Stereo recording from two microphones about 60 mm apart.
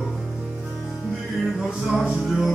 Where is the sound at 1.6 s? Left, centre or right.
Centre.